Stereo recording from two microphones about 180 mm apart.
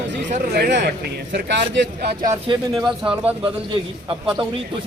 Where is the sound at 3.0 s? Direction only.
5° right (ahead or behind).